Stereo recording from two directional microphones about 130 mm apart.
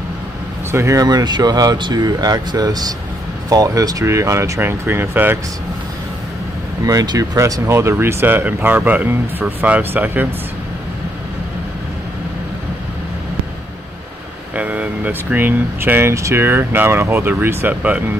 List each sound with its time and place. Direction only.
0.7 s speech: 20° right (ahead or behind)
6.8 s speech: 30° right (ahead or behind)
14.5 s speech: 10° right (ahead or behind)